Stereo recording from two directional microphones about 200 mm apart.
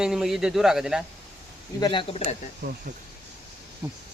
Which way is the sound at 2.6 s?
55° right (ahead or behind).